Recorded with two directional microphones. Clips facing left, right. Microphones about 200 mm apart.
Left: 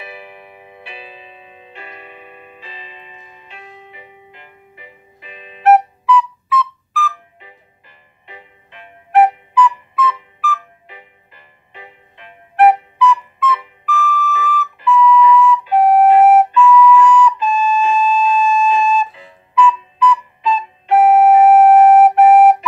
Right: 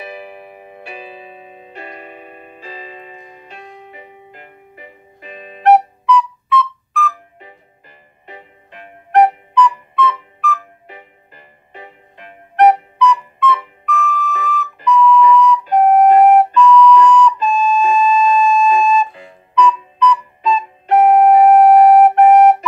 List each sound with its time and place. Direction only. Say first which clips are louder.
0.0 s music: right 4 dB; 40° right (ahead or behind)
5.6 s flute: even; centre (ahead or behind)
7.3 s music: right 3 dB; 45° right (ahead or behind)
9.1 s flute: even; 5° left (ahead or behind)
10.9 s music: right 4 dB; 45° right (ahead or behind)
12.5 s flute: even; centre (ahead or behind)
13.8 s whistle: left 1 dB; centre (ahead or behind)
14.9 s flute: even; centre (ahead or behind)
20.9 s music: even; 5° left (ahead or behind)